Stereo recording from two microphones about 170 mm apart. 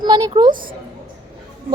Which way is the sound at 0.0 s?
25° right (ahead or behind).